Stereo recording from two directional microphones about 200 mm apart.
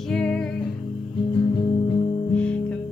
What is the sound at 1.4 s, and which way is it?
Music, 25° left (ahead or behind).